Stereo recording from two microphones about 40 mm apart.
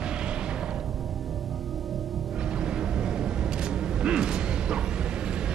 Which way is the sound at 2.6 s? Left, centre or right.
Right.